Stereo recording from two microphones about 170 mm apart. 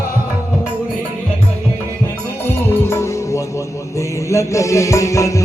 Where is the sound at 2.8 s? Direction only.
15° left (ahead or behind).